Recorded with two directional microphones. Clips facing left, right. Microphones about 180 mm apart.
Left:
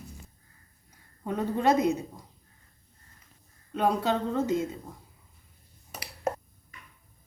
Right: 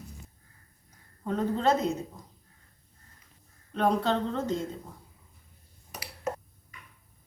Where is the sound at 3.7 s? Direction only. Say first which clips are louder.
Even; 10° left (ahead or behind).